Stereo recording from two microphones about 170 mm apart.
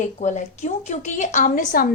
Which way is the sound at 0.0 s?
45° left (ahead or behind).